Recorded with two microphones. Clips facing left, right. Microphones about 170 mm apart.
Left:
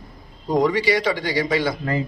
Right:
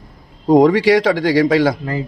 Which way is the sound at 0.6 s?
90° right.